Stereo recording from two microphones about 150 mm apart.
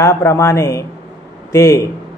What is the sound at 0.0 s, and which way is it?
A man's voice, 20° left (ahead or behind).